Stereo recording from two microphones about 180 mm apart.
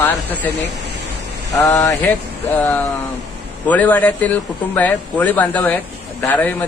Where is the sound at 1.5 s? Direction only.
15° left (ahead or behind).